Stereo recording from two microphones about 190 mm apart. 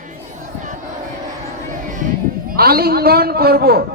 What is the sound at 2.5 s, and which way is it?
A man's voice, 55° right (ahead or behind).